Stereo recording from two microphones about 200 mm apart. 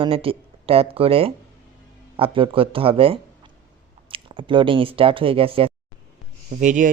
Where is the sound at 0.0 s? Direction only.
25° right (ahead or behind).